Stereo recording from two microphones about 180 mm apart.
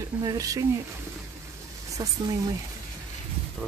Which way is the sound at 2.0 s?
20° right (ahead or behind).